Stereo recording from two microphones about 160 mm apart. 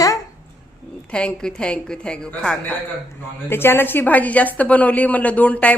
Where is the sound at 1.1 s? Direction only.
5° left (ahead or behind).